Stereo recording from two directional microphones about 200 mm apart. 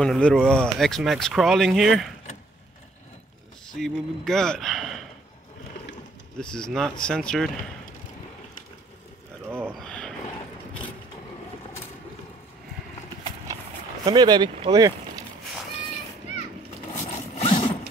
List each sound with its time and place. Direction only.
0.0 s speech: centre (ahead or behind)
3.7 s speech: centre (ahead or behind)
6.4 s speech: 5° left (ahead or behind)
9.5 s a sound: 10° right (ahead or behind)
9.8 s a sound: 5° left (ahead or behind)
14.0 s speech: 20° right (ahead or behind)
16.9 s zipper: 35° left (ahead or behind)